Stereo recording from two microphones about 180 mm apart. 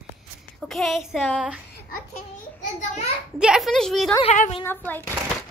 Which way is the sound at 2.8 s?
40° left (ahead or behind).